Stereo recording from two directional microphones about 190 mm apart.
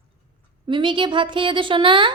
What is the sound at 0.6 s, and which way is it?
A woman's voice, 25° right (ahead or behind).